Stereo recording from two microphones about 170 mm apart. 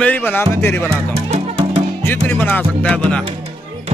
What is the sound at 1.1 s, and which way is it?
Music, 40° right (ahead or behind).